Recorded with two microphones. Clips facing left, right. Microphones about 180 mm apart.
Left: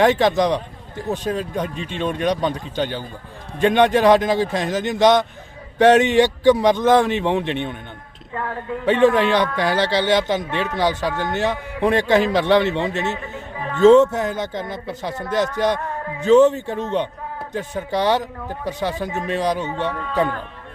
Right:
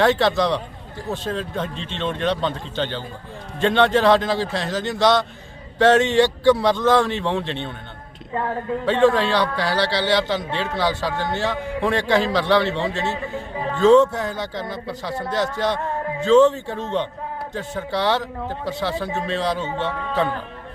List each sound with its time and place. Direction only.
0.0 s a man's voice: 15° left (ahead or behind)
8.3 s speech: 25° right (ahead or behind)
8.8 s a man's voice: 20° left (ahead or behind)